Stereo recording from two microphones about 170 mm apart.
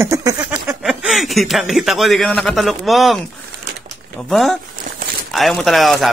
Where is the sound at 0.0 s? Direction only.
20° right (ahead or behind).